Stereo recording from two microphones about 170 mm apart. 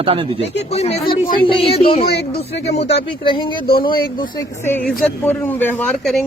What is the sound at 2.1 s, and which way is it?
Speech, 75° left (ahead or behind).